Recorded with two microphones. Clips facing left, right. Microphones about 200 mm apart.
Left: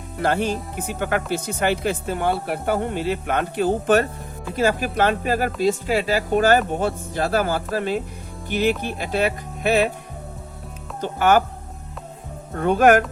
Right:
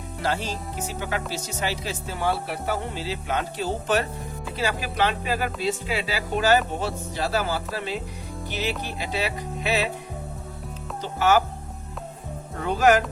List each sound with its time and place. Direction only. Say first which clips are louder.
0.2 s speech: left 6 dB; 55° left (ahead or behind)
11.0 s speech: left 3 dB; 55° left (ahead or behind)
12.5 s speech: left 4 dB; 55° left (ahead or behind)